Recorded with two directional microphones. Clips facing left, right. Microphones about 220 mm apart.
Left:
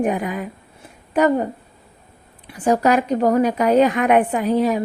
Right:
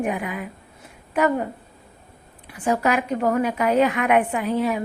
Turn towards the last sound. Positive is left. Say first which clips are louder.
# left 4 dB
turn(degrees=35)  # may be behind; listen again after turning